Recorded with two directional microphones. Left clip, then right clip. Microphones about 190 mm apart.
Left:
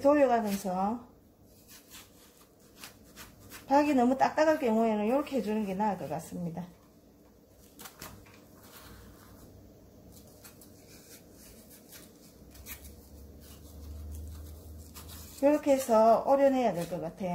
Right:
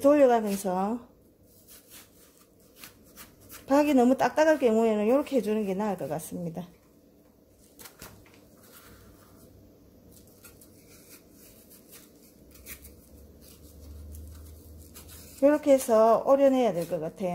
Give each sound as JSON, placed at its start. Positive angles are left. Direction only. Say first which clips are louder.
{"t": 0.0, "sound": "speech", "louder": "right 4 dB", "side_deg": -55}
{"t": 3.6, "sound": "speech", "louder": "right 3 dB", "side_deg": -55}
{"t": 15.4, "sound": "speech", "louder": "right 4 dB", "side_deg": -50}